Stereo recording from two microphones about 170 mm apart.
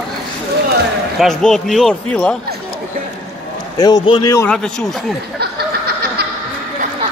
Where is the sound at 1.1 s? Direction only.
Centre (ahead or behind).